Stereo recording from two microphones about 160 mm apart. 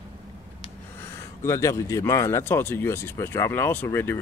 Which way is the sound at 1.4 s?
20° left (ahead or behind).